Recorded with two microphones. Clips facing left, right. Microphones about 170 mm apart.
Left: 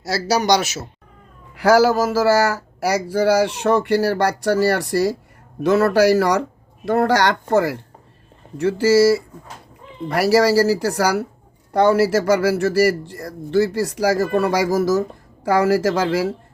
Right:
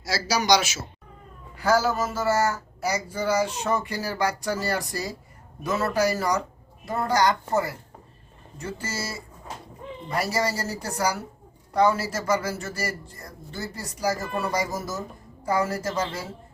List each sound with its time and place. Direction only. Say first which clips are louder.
0.0 s speech: left 7 dB; 60° left (ahead or behind)
1.5 s speech: left 8 dB; 80° left
11.7 s speech: left 7 dB; 65° left (ahead or behind); by 16.3 s 90° left